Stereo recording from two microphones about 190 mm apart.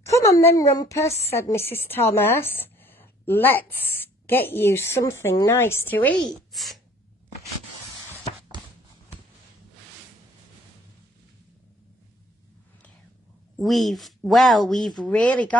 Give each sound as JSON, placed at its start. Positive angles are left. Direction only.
{"t": 0.0, "sound": "a woman's voice", "side_deg": 15}
{"t": 13.6, "sound": "speech", "side_deg": 0}